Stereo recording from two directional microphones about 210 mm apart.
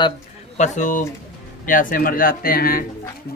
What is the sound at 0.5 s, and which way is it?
Speech, 35° left (ahead or behind).